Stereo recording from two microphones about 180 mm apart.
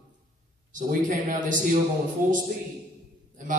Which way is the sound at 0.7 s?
45° right (ahead or behind).